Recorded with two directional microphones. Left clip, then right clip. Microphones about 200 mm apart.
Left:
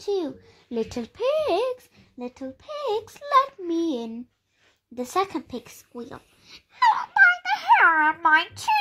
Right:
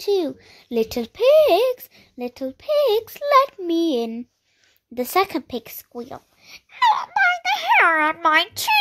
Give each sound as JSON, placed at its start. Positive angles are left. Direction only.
{"t": 0.0, "sound": "a child's voice", "side_deg": -40}